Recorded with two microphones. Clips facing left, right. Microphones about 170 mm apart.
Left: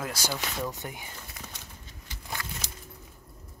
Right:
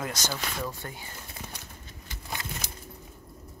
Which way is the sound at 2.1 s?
50° right (ahead or behind).